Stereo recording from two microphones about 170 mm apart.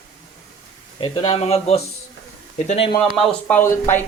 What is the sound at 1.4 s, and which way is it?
Speech, 40° left (ahead or behind).